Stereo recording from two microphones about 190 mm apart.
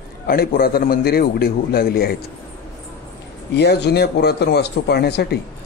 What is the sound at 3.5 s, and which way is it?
A man's voice, 60° left (ahead or behind).